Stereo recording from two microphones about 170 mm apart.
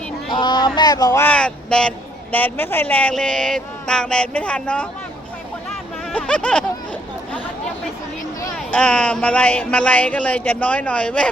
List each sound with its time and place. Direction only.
0.3 s speech: 25° left (ahead or behind); by 4.9 s 5° left (ahead or behind)
6.1 s speech: 5° left (ahead or behind)
8.5 s speech: 5° left (ahead or behind)